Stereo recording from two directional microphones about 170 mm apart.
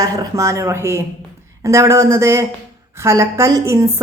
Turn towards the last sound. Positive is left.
turn(degrees=-20)  # may be behind; listen again after turning